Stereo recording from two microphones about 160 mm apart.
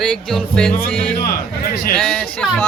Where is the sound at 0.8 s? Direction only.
70° left (ahead or behind).